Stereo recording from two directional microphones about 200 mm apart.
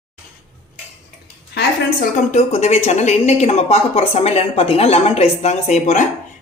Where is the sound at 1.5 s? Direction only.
45° left (ahead or behind).